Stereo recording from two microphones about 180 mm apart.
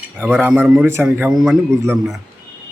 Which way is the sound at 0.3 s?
5° right (ahead or behind).